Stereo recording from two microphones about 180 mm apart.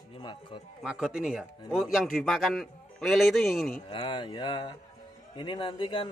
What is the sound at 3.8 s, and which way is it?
Speech, 30° left (ahead or behind).